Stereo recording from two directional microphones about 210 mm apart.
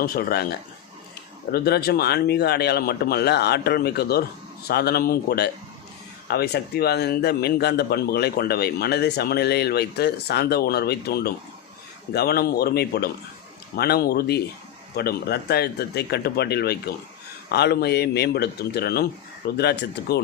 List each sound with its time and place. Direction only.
0.0 s a man's voice: 45° left (ahead or behind)
1.5 s a man's voice: 50° left (ahead or behind)